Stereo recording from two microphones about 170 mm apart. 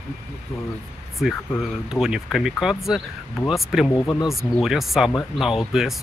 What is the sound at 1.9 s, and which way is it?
Speech, 5° right (ahead or behind).